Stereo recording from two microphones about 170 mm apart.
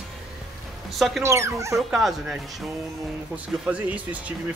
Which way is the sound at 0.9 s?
Centre (ahead or behind).